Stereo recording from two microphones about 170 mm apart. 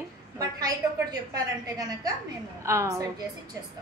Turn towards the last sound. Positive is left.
turn(degrees=-20)  # may be behind; listen again after turning